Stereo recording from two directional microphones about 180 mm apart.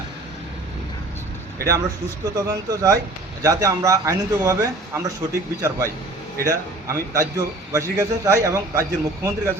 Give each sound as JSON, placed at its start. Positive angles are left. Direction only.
{"t": 2.3, "sound": "a man's voice", "side_deg": -20}